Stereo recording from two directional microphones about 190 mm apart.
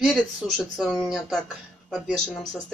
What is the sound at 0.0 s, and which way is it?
Speech, centre (ahead or behind).